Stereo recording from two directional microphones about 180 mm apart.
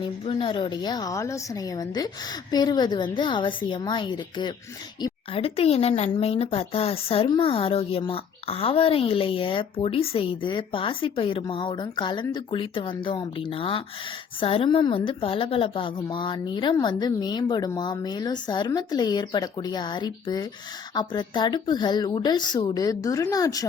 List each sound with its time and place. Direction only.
0.0 s a woman's voice: 30° left (ahead or behind)